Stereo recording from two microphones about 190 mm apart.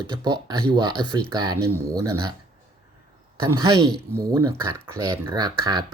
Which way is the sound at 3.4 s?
20° right (ahead or behind).